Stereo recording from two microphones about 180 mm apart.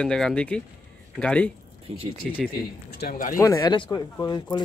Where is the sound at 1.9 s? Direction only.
30° right (ahead or behind).